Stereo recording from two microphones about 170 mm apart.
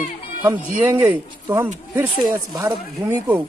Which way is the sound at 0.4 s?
10° right (ahead or behind).